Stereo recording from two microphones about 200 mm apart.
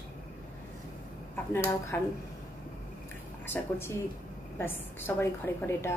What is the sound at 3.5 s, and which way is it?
A woman's voice, 10° left (ahead or behind).